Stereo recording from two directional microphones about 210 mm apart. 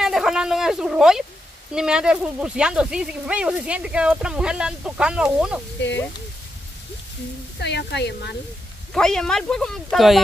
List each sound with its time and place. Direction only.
0.0 s speech: centre (ahead or behind)
7.5 s speech: 55° left (ahead or behind)
8.9 s speech: 5° left (ahead or behind)